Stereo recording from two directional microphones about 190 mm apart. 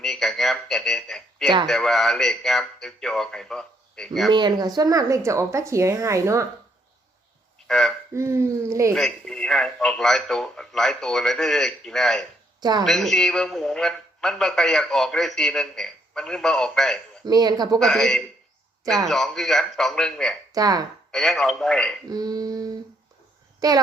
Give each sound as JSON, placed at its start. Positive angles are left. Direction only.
{"t": 0.0, "sound": "a man's voice", "side_deg": 0}
{"t": 4.3, "sound": "speech", "side_deg": -25}
{"t": 7.7, "sound": "a man's voice", "side_deg": 0}
{"t": 8.1, "sound": "speech", "side_deg": -15}
{"t": 9.0, "sound": "a man's voice", "side_deg": 0}
{"t": 12.5, "sound": "a sound", "side_deg": -20}
{"t": 12.8, "sound": "a man's voice", "side_deg": 0}
{"t": 17.2, "sound": "a sound", "side_deg": -20}
{"t": 17.7, "sound": "a man's voice", "side_deg": 0}
{"t": 20.5, "sound": "a sound", "side_deg": -20}
{"t": 21.1, "sound": "a man's voice", "side_deg": 0}
{"t": 22.1, "sound": "a sound", "side_deg": -20}
{"t": 23.6, "sound": "a child's voice", "side_deg": -20}